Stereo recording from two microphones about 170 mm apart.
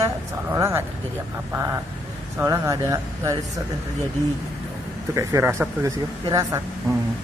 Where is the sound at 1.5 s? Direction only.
15° right (ahead or behind).